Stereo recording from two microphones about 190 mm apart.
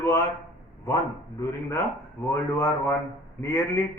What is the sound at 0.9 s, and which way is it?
A man's voice, 15° left (ahead or behind).